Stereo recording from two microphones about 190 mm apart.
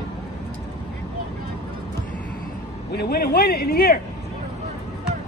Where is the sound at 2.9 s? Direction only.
60° left (ahead or behind).